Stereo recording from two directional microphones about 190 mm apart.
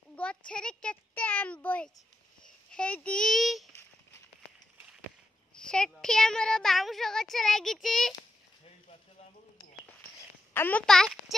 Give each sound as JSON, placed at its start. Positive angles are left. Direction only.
{"t": 0.1, "sound": "a sound", "side_deg": 5}
{"t": 0.5, "sound": "a child's voice", "side_deg": 5}
{"t": 5.5, "sound": "speech", "side_deg": 5}
{"t": 10.5, "sound": "speech", "side_deg": 10}